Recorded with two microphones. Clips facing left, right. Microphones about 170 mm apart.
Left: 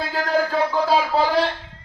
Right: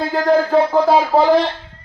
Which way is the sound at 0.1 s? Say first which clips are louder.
Right 8 dB; 50° right (ahead or behind).